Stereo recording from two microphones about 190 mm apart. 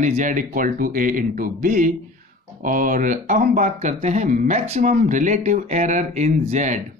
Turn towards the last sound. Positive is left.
turn(degrees=-40)  # may be behind; listen again after turning